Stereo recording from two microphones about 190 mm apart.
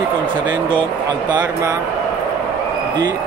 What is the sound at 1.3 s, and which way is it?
Speech, 20° right (ahead or behind).